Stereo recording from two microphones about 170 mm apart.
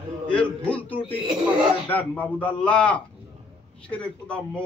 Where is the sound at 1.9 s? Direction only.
10° left (ahead or behind).